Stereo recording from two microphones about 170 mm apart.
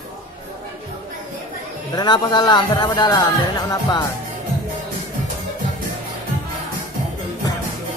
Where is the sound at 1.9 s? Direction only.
25° left (ahead or behind).